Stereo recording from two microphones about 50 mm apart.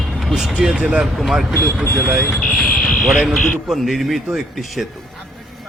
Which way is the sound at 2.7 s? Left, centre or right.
Centre.